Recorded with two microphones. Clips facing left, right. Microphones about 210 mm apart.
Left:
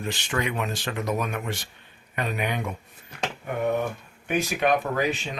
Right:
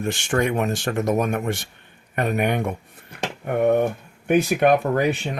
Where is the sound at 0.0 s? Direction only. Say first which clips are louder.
Right 6 dB; 50° right (ahead or behind).